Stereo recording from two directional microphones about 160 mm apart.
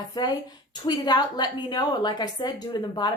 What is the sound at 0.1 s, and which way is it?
A woman's voice, 25° left (ahead or behind).